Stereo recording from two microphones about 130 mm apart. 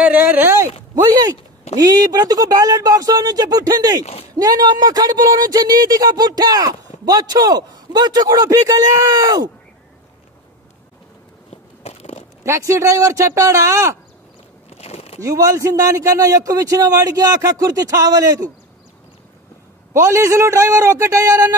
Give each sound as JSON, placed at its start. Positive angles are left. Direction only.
{"t": 0.0, "sound": "speech", "side_deg": -10}
{"t": 1.0, "sound": "speech", "side_deg": -30}
{"t": 4.0, "sound": "speech", "side_deg": 50}
{"t": 4.4, "sound": "speech", "side_deg": -30}
{"t": 11.5, "sound": "a sound", "side_deg": 50}
{"t": 12.4, "sound": "speech", "side_deg": -20}
{"t": 14.7, "sound": "a sound", "side_deg": 50}
{"t": 15.1, "sound": "speech", "side_deg": -25}
{"t": 19.9, "sound": "speech", "side_deg": -20}